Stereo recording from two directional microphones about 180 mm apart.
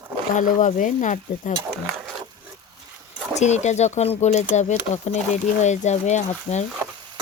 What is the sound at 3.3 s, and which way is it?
Speech, 40° left (ahead or behind).